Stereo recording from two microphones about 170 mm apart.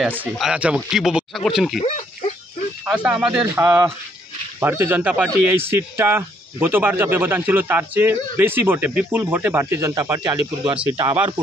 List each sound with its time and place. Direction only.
0.0 s speech: 5° right (ahead or behind)
2.8 s speech: 5° right (ahead or behind)
10.6 s speech: 5° right (ahead or behind)
11.0 s speech: 30° right (ahead or behind)